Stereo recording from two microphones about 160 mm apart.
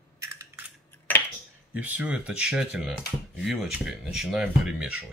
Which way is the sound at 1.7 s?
10° right (ahead or behind).